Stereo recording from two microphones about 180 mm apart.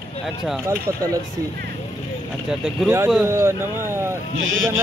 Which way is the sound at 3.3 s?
15° right (ahead or behind).